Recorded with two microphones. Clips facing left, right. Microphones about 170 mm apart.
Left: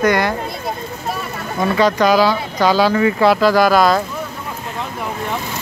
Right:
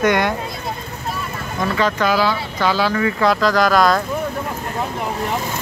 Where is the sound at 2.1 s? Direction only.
40° left (ahead or behind).